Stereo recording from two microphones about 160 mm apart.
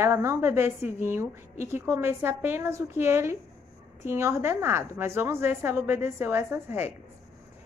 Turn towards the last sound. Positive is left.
turn(degrees=-15)  # may be behind; listen again after turning